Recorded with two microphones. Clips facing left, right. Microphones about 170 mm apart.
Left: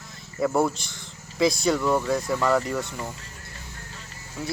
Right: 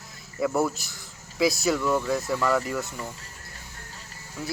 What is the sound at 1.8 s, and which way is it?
Speech, 20° left (ahead or behind).